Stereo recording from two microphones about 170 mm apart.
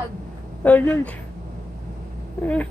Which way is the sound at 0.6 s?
10° left (ahead or behind).